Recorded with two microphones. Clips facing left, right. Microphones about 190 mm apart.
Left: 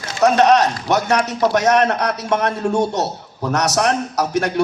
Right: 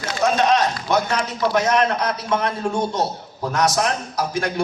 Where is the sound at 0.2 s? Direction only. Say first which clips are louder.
Left 5 dB; 70° left (ahead or behind).